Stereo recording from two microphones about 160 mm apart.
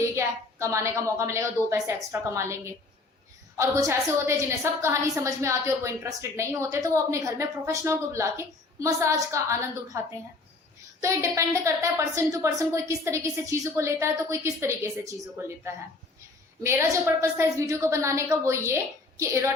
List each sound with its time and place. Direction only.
0.0 s a woman's voice: 20° right (ahead or behind)
11.0 s a woman's voice: 20° right (ahead or behind)